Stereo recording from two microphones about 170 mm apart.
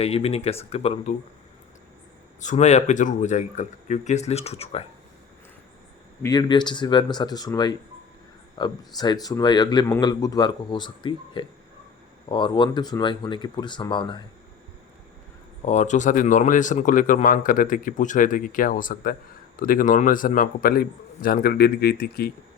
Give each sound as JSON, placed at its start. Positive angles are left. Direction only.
{"t": 0.0, "sound": "speech", "side_deg": 35}
{"t": 2.4, "sound": "speech", "side_deg": 45}
{"t": 6.2, "sound": "a man's voice", "side_deg": 25}
{"t": 15.6, "sound": "a man's voice", "side_deg": 45}